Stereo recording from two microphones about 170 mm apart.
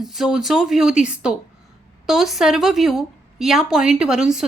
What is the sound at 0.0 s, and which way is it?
A woman's voice, centre (ahead or behind).